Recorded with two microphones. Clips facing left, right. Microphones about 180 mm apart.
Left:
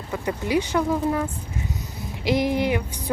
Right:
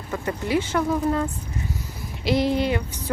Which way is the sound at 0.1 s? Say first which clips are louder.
Even; 15° left (ahead or behind).